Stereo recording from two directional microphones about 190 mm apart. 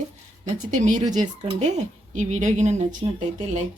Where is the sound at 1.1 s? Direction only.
40° right (ahead or behind).